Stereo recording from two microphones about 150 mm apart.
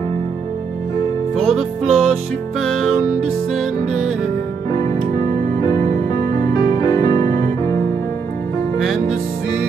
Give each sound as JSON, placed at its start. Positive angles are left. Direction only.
{"t": 1.4, "sound": "music", "side_deg": 5}
{"t": 4.7, "sound": "music", "side_deg": 25}
{"t": 8.7, "sound": "music", "side_deg": 0}